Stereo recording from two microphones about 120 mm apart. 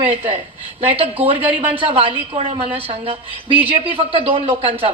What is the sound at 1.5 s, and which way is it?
A woman's voice, 50° right (ahead or behind).